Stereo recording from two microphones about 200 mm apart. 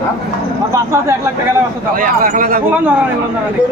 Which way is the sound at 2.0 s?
45° right (ahead or behind).